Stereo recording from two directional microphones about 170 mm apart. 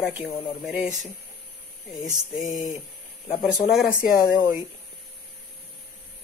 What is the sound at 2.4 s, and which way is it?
Speech, 50° left (ahead or behind).